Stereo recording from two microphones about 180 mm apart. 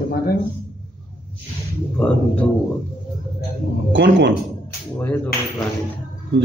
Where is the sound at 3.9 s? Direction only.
80° right.